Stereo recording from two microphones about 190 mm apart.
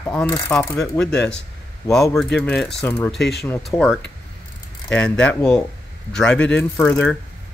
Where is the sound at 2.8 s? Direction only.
15° left (ahead or behind).